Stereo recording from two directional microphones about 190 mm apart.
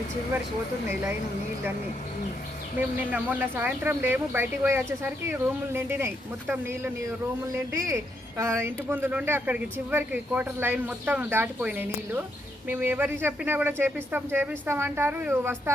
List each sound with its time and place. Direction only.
3.1 s speech: 10° right (ahead or behind)